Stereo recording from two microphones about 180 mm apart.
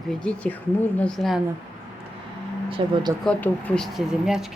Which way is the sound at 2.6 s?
30° right (ahead or behind).